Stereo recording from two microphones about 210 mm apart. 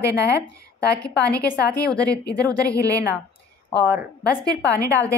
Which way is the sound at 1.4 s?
50° left (ahead or behind).